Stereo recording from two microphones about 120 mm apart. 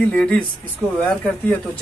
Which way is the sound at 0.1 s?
5° left (ahead or behind).